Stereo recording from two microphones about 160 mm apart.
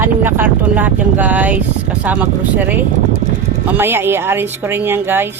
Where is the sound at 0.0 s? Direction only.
15° right (ahead or behind).